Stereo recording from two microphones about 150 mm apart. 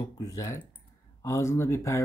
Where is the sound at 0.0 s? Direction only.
25° left (ahead or behind).